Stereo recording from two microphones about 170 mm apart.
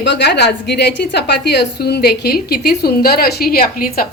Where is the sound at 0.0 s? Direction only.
90° left.